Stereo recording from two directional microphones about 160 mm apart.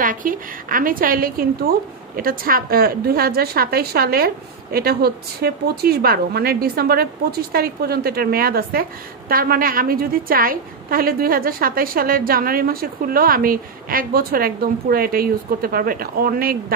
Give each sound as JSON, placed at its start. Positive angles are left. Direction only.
{"t": 0.0, "sound": "a woman's voice", "side_deg": -55}